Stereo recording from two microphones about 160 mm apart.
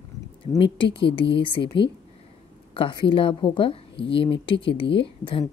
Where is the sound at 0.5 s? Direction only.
30° left (ahead or behind).